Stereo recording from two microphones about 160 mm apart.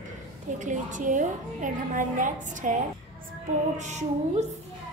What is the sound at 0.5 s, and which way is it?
A woman's voice, 50° right (ahead or behind).